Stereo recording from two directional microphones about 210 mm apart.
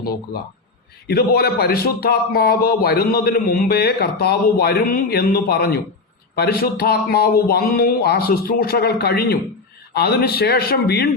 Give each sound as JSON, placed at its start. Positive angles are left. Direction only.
{"t": 1.0, "sound": "speech", "side_deg": 45}